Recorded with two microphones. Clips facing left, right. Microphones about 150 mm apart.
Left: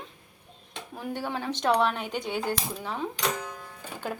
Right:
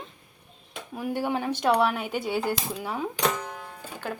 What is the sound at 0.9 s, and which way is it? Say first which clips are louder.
Speech: right 5 dB; 10° right (ahead or behind).